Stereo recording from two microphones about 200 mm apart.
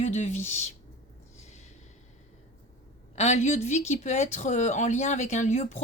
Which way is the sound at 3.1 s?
35° left (ahead or behind).